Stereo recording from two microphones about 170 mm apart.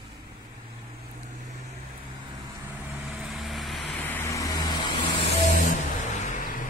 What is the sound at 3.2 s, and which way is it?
Vehicle, centre (ahead or behind).